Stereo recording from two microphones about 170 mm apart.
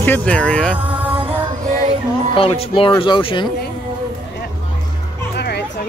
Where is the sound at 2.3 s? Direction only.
35° left (ahead or behind).